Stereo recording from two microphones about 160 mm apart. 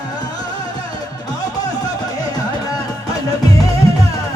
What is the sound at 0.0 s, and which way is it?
Music, 25° left (ahead or behind).